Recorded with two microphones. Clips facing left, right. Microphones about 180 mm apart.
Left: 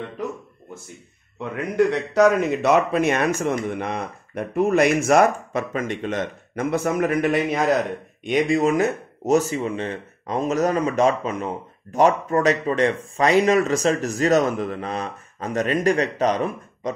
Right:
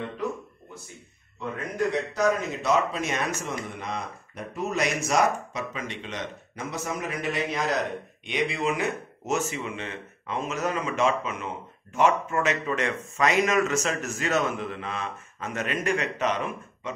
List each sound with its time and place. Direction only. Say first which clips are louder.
1.6 s speech: left 7 dB; 70° left (ahead or behind); by 16.9 s 35° left (ahead or behind)